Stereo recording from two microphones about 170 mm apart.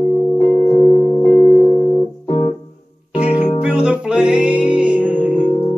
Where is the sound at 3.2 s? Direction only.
40° left (ahead or behind).